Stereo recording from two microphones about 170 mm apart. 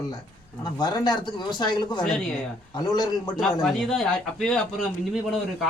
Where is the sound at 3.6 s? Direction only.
Centre (ahead or behind).